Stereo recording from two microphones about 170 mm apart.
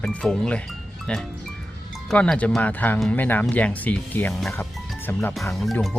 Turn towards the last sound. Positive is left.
turn(degrees=0)  # may be behind; listen again after turning